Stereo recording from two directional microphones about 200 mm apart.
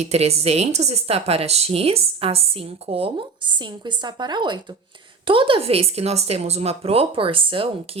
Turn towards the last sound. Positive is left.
turn(degrees=-25)  # may be behind; listen again after turning